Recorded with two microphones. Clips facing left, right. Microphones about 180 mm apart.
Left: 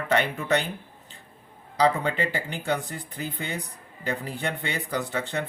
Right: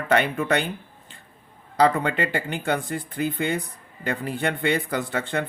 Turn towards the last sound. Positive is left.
turn(degrees=-55)  # may be behind; listen again after turning